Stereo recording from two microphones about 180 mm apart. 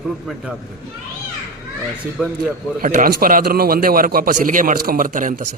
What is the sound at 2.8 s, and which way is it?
A man's voice, 50° right (ahead or behind).